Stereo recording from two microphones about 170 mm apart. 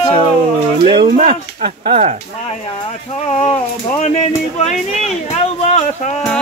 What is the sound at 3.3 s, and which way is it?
Speech, 40° left (ahead or behind).